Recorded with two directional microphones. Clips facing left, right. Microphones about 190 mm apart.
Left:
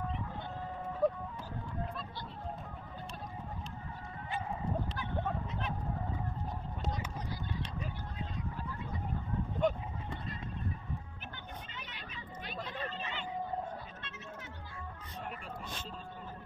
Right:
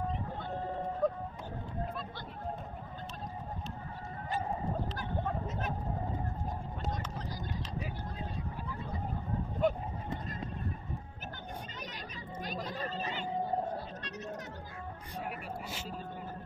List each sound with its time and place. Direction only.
1.0 s music: 5° left (ahead or behind)
4.3 s neigh: 35° right (ahead or behind)
5.5 s vehicle: 40° right (ahead or behind)
9.6 s a sound: 5° right (ahead or behind)
11.7 s a sound: 40° right (ahead or behind)
15.1 s vehicle: 10° right (ahead or behind)